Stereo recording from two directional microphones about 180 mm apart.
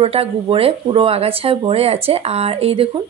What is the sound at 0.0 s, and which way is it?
Speech, 30° right (ahead or behind).